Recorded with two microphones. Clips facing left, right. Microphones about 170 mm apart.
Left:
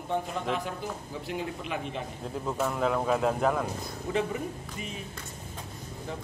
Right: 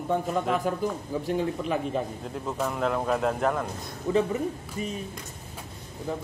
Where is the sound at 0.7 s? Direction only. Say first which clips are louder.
Right 8 dB; 45° right (ahead or behind).